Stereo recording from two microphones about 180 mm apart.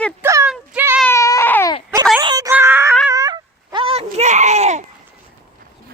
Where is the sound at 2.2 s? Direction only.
25° right (ahead or behind).